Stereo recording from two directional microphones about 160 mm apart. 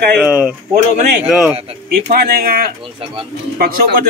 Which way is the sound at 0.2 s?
10° right (ahead or behind).